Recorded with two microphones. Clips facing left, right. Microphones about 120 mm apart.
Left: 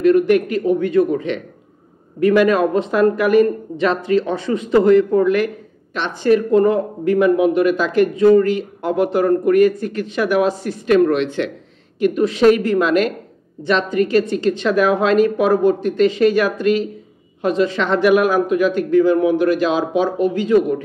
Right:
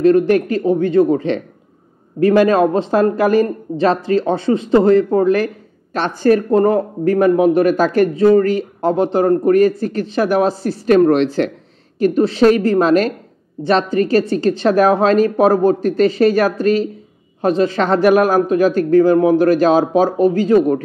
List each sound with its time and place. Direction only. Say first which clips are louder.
0.0 s speech: right 1 dB; 30° right (ahead or behind)